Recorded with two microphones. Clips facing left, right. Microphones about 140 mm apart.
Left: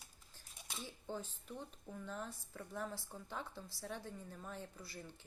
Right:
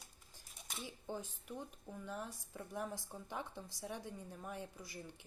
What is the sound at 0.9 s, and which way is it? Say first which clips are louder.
Speech: right 1 dB; 15° right (ahead or behind).